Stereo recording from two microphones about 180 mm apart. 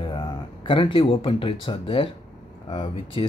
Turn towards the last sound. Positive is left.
turn(degrees=25)  # may be behind; listen again after turning